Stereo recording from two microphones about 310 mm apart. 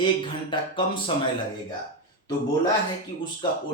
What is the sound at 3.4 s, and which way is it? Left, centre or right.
Speech, centre.